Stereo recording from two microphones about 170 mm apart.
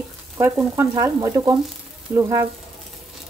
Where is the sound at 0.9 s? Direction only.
20° right (ahead or behind).